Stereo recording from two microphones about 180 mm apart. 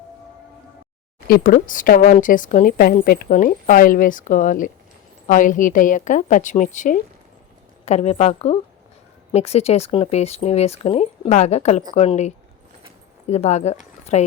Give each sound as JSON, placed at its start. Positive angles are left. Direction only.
{"t": 1.3, "sound": "a woman's voice", "side_deg": 50}